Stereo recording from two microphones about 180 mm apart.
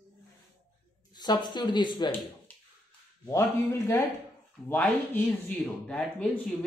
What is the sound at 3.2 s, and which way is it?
Speech, 15° left (ahead or behind).